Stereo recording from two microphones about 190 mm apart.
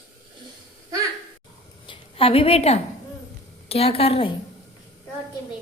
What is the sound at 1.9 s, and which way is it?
A woman's voice, 30° left (ahead or behind).